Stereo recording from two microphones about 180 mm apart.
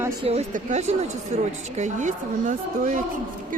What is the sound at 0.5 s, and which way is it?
A woman's voice, 40° right (ahead or behind).